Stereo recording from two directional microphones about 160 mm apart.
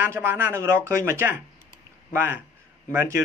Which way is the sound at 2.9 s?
15° right (ahead or behind).